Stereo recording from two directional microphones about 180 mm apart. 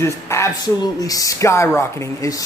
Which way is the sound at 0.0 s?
15° left (ahead or behind).